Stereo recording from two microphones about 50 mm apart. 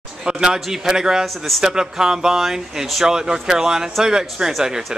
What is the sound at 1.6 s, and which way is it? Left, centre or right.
Speech, centre.